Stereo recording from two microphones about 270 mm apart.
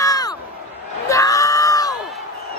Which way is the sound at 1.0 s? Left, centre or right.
Centre.